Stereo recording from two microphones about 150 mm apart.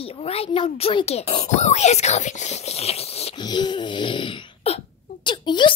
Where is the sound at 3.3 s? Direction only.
30° left (ahead or behind).